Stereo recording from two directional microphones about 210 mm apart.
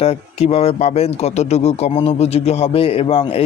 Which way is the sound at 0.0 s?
30° left (ahead or behind).